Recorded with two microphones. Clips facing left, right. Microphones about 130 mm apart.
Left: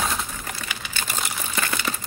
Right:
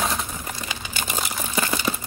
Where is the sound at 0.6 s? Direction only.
10° right (ahead or behind).